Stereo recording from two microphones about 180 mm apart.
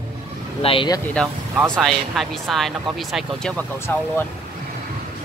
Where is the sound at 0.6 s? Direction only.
25° left (ahead or behind).